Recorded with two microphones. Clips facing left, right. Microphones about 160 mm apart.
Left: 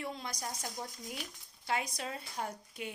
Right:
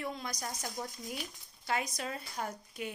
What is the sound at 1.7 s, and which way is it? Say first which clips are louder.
Speech: right 1 dB; 25° left (ahead or behind).